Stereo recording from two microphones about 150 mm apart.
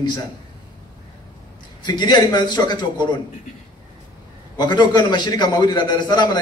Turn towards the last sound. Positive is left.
turn(degrees=30)  # may be behind; listen again after turning